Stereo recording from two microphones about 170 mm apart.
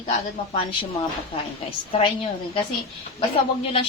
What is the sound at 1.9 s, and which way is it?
Speech, 30° left (ahead or behind).